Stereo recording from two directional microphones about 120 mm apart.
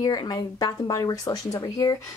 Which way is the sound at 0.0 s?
35° left (ahead or behind).